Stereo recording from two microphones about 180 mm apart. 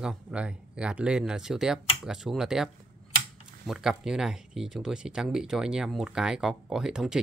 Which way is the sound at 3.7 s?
5° right (ahead or behind).